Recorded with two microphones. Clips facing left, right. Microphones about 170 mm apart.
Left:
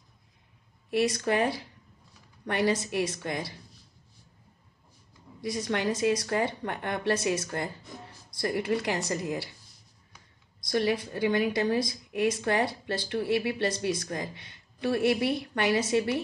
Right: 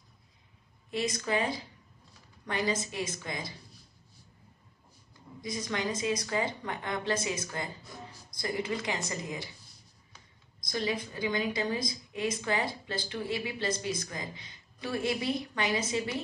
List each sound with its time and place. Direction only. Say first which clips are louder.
0.8 s a woman's voice: left 6 dB; 70° left (ahead or behind)
5.4 s a woman's voice: left 5 dB; 70° left (ahead or behind)
10.6 s a woman's voice: left 6 dB; 65° left (ahead or behind)